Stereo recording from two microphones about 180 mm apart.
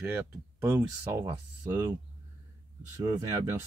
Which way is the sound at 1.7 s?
15° right (ahead or behind).